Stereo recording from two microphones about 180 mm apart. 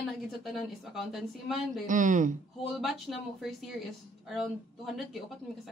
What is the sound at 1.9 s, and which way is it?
Speech, 45° right (ahead or behind).